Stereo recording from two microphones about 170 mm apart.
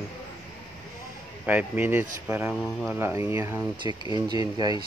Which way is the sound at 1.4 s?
10° right (ahead or behind).